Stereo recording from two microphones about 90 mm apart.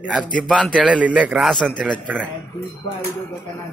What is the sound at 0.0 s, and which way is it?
Speech, 15° right (ahead or behind).